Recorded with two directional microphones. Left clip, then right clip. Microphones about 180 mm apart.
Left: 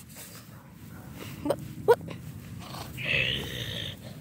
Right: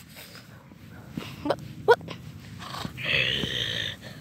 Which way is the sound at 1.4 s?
5° left (ahead or behind).